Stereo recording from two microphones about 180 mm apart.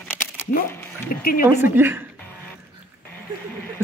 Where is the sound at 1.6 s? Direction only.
10° right (ahead or behind).